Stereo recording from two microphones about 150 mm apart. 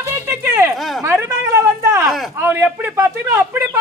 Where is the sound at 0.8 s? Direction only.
Centre (ahead or behind).